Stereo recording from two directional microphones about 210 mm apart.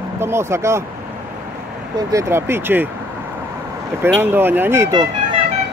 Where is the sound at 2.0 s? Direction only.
15° right (ahead or behind).